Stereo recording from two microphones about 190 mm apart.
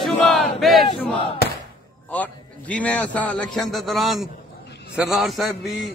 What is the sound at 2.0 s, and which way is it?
A man's voice, 10° left (ahead or behind).